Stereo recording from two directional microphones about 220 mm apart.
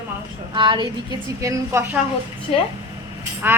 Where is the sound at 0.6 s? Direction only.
20° right (ahead or behind).